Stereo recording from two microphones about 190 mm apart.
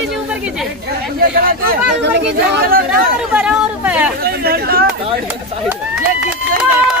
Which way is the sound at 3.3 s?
5° right (ahead or behind).